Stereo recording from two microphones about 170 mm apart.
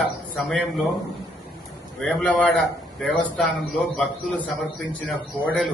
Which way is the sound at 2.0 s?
5° left (ahead or behind).